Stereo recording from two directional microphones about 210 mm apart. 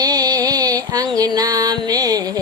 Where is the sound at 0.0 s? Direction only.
20° right (ahead or behind).